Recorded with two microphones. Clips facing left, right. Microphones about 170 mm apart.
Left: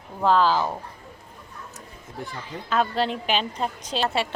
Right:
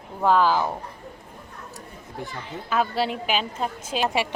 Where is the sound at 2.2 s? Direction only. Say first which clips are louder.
Even; 5° right (ahead or behind).